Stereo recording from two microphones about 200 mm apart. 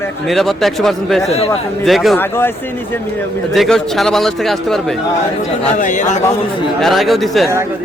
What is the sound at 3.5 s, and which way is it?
Speech, centre (ahead or behind).